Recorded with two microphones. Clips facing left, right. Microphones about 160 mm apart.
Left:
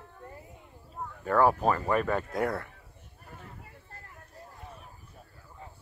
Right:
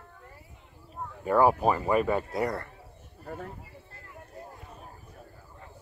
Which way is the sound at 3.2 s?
50° right (ahead or behind).